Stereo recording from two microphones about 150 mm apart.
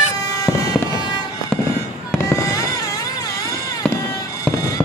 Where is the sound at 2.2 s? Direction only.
20° left (ahead or behind).